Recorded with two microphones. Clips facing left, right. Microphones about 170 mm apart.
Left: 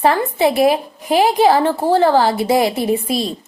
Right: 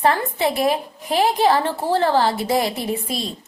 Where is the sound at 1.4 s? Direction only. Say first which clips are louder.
Left 5 dB; 30° left (ahead or behind).